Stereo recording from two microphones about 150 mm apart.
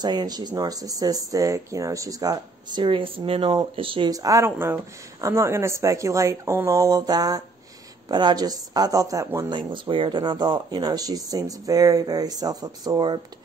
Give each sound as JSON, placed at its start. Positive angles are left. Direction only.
{"t": 0.0, "sound": "speech", "side_deg": -30}
{"t": 4.1, "sound": "speech", "side_deg": -25}
{"t": 9.6, "sound": "speech", "side_deg": -35}